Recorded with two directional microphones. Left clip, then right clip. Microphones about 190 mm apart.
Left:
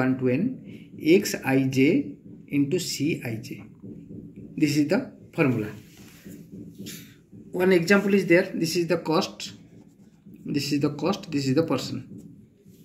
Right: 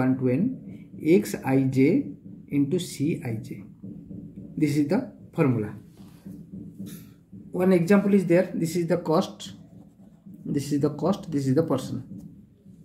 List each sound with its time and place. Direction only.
0.0 s speech: 25° right (ahead or behind)
4.6 s speech: 30° right (ahead or behind)
7.5 s speech: 30° right (ahead or behind)